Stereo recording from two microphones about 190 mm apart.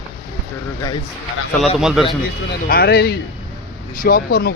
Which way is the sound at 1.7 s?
5° right (ahead or behind).